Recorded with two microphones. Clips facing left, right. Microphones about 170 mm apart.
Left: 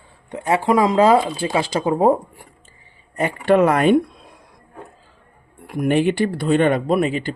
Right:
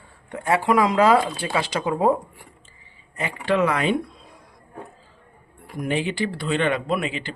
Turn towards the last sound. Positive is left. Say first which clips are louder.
# left 7 dB
turn(degrees=45)  # may be behind; listen again after turning